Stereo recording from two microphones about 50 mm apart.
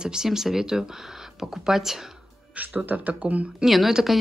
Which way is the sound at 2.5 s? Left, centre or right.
Right.